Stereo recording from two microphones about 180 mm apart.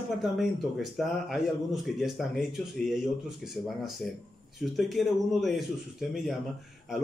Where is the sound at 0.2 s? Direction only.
Centre (ahead or behind).